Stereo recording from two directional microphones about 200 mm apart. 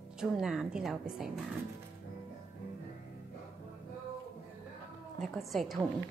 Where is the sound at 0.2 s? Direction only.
5° right (ahead or behind).